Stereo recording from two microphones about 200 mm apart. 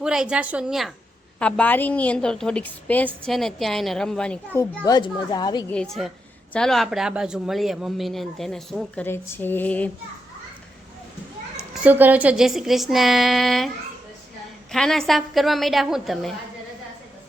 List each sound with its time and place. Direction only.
0.0 s a woman's voice: 5° right (ahead or behind)
4.6 s a woman's voice: 20° left (ahead or behind)
5.7 s a woman's voice: centre (ahead or behind)
11.7 s speech: 5° right (ahead or behind)
14.7 s speech: centre (ahead or behind)